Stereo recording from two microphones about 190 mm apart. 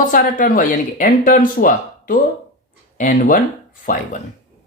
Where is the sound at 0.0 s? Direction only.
45° left (ahead or behind).